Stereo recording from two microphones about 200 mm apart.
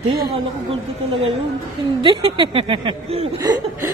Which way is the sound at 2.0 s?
25° right (ahead or behind).